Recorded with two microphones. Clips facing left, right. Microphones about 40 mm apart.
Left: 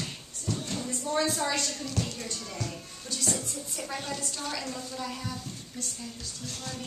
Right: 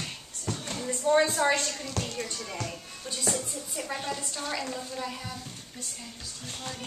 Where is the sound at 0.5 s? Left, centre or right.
Right.